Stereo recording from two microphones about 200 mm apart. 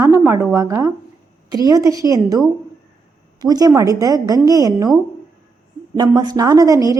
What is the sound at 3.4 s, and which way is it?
A woman's voice, 20° right (ahead or behind).